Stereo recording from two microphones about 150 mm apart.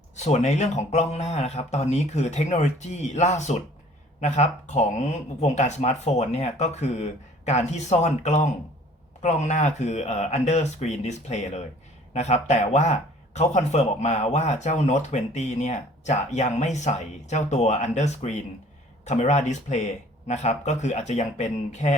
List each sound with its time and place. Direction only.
0.2 s speech: 50° left (ahead or behind)